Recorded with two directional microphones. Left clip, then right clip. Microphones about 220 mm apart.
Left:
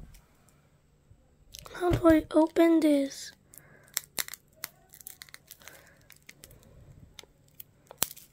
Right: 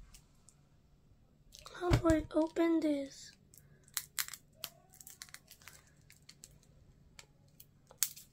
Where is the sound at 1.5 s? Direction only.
40° left (ahead or behind).